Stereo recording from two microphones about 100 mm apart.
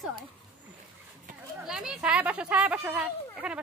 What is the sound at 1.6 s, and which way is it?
Speech, 5° right (ahead or behind).